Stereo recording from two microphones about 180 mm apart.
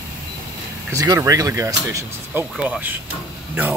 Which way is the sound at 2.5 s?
5° right (ahead or behind).